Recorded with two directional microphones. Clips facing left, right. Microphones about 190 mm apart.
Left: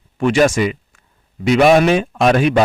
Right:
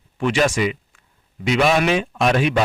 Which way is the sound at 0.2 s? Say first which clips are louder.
Left 5 dB; 45° left (ahead or behind).